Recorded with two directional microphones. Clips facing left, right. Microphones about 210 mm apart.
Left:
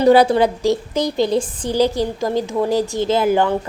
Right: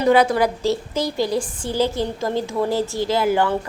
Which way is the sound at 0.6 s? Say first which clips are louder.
Left 3 dB; 15° left (ahead or behind).